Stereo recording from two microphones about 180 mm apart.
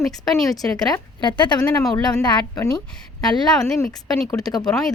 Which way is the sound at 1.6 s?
10° left (ahead or behind).